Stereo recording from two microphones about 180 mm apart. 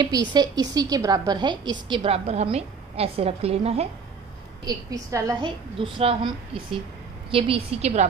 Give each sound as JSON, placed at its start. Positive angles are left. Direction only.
{"t": 0.0, "sound": "a woman's voice", "side_deg": -25}
{"t": 4.6, "sound": "a woman's voice", "side_deg": -20}